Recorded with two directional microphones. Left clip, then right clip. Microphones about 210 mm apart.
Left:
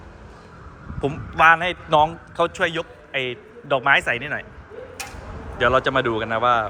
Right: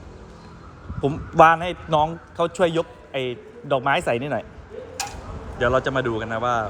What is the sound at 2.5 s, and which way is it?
A man's voice, 25° right (ahead or behind).